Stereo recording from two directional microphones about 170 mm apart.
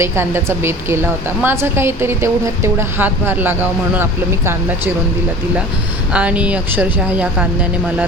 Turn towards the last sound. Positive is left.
turn(degrees=-10)  # may be behind; listen again after turning